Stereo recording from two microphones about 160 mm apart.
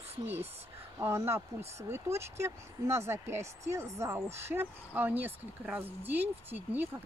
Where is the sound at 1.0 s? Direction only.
15° right (ahead or behind).